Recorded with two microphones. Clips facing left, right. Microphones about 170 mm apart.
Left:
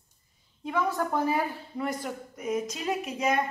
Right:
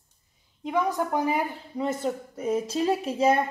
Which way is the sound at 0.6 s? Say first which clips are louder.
Right 2 dB; 15° right (ahead or behind).